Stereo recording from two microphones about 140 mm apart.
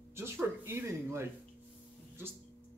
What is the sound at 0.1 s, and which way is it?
Speech, 20° right (ahead or behind).